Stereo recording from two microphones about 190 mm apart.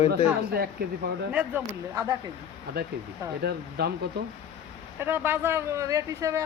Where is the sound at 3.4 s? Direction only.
55° right (ahead or behind).